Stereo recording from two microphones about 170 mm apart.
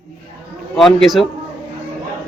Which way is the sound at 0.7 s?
Centre (ahead or behind).